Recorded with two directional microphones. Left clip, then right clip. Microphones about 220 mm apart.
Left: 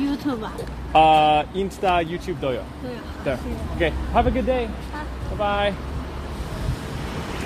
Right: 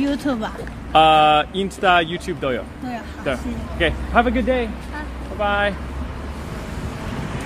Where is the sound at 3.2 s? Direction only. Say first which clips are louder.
Right 1 dB; 10° right (ahead or behind).